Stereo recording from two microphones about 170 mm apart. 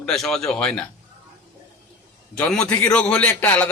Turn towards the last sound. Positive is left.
turn(degrees=10)  # may be behind; listen again after turning